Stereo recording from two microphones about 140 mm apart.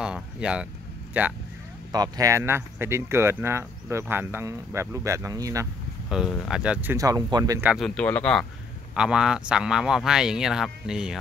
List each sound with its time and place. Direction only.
0.0 s a sound: 5° right (ahead or behind)
1.1 s speech: 15° right (ahead or behind)
1.9 s speech: 25° right (ahead or behind)
6.0 s speech: 5° right (ahead or behind)
7.0 s speech: 25° right (ahead or behind)
7.6 s speech: 5° right (ahead or behind)
7.9 s speech: 10° left (ahead or behind)
8.9 s speech: 5° right (ahead or behind)